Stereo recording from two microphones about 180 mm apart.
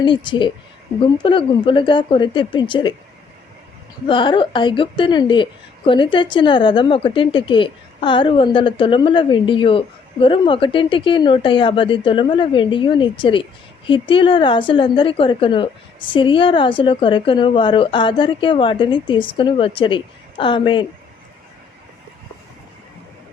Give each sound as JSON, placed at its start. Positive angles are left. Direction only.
{"t": 0.0, "sound": "a woman's voice", "side_deg": 25}
{"t": 4.0, "sound": "a woman's voice", "side_deg": 25}